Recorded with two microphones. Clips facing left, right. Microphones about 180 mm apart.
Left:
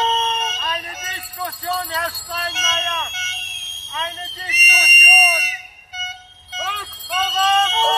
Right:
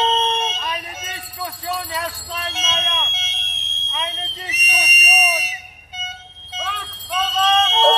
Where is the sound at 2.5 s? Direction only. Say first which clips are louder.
Even; 30° right (ahead or behind).